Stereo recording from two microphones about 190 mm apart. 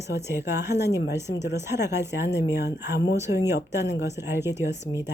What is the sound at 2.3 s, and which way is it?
Speech, 65° left (ahead or behind).